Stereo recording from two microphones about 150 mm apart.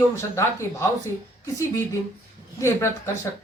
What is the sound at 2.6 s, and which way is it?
Speech, 20° left (ahead or behind).